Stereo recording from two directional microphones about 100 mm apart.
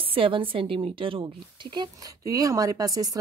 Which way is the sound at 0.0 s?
65° right (ahead or behind).